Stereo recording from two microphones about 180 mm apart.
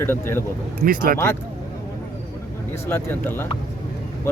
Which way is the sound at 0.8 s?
55° right (ahead or behind).